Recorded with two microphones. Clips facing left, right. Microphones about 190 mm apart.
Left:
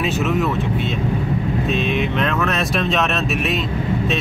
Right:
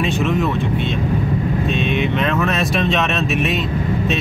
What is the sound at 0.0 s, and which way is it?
Speech, 5° left (ahead or behind).